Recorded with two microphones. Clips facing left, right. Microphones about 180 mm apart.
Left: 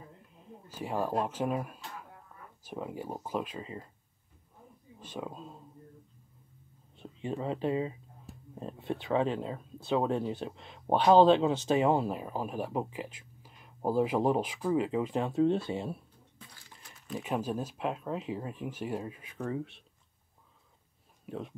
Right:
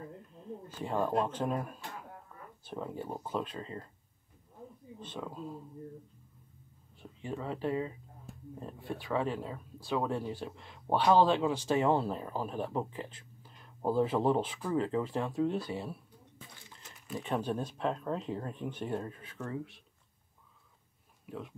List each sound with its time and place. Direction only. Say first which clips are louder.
0.7 s speech: even; 10° left (ahead or behind)
2.6 s speech: left 1 dB; 10° left (ahead or behind)
5.0 s speech: left 2 dB; 10° left (ahead or behind)
7.0 s speech: left 4 dB; 20° left (ahead or behind)
17.1 s speech: left 1 dB; 5° left (ahead or behind)
21.3 s speech: left 3 dB; 25° left (ahead or behind)